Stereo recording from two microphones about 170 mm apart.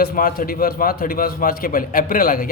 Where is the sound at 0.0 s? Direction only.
55° left (ahead or behind).